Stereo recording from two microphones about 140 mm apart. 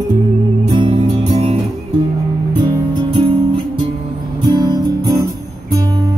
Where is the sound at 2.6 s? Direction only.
35° right (ahead or behind).